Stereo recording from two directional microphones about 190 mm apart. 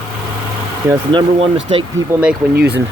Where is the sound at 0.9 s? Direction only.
25° right (ahead or behind).